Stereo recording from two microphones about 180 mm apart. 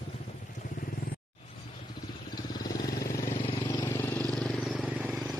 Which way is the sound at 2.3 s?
25° left (ahead or behind).